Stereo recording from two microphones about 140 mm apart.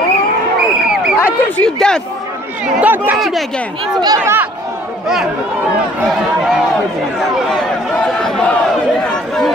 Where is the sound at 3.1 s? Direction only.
Centre (ahead or behind).